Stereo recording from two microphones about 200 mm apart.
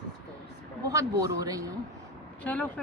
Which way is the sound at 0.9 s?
15° right (ahead or behind).